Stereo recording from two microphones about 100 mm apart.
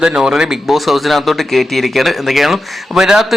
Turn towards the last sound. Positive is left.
turn(degrees=-5)  # may be behind; listen again after turning